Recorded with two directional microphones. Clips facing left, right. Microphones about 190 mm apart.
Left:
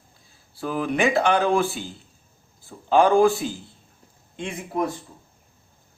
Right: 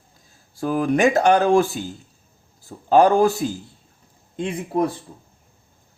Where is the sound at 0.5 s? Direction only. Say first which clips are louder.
Right 5 dB; 45° right (ahead or behind).